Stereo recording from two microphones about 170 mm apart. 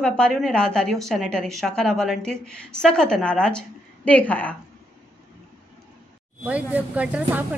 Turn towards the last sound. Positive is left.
turn(degrees=-10)  # may be behind; listen again after turning